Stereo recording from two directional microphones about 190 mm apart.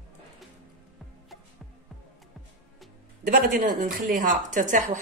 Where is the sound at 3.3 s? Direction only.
50° right (ahead or behind).